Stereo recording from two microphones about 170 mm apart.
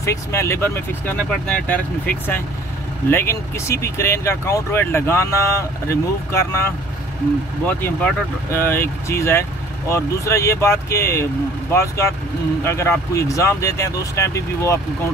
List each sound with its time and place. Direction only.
0.0 s speech: 15° left (ahead or behind)
7.6 s speech: 10° left (ahead or behind)
12.6 s speech: 15° left (ahead or behind)